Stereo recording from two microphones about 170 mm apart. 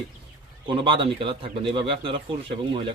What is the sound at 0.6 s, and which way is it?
Speech, 30° right (ahead or behind).